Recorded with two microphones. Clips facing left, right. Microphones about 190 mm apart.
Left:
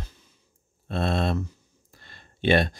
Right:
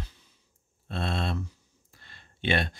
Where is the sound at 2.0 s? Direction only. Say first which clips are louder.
Left 7 dB; 40° left (ahead or behind).